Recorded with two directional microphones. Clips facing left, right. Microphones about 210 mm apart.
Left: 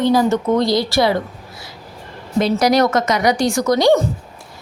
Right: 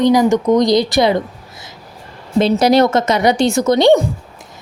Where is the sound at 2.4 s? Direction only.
25° right (ahead or behind).